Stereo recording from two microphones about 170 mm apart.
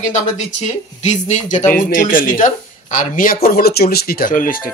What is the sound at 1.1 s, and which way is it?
Speech, 45° left (ahead or behind).